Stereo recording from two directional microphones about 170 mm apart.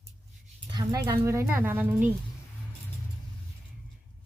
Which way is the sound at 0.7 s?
20° right (ahead or behind).